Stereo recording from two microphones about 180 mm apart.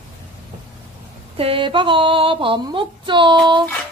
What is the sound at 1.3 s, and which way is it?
A woman's voice, 30° right (ahead or behind).